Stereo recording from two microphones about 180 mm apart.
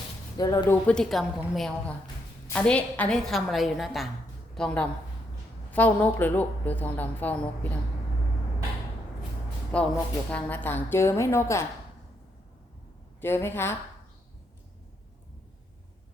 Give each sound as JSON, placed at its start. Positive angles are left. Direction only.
{"t": 0.3, "sound": "speech", "side_deg": 20}
{"t": 0.9, "sound": "a woman's voice", "side_deg": 5}
{"t": 9.7, "sound": "a woman's voice", "side_deg": 5}
{"t": 13.2, "sound": "a woman's voice", "side_deg": 15}